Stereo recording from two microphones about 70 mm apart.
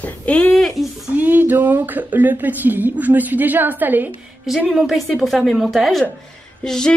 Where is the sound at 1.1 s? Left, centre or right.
Right.